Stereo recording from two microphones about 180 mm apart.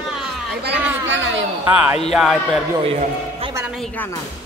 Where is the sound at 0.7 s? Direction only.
90° right.